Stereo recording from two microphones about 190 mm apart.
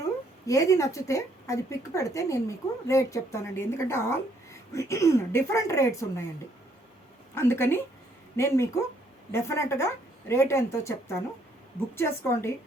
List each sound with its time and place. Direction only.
0.4 s a woman's voice: 15° left (ahead or behind)
7.3 s a woman's voice: 10° left (ahead or behind)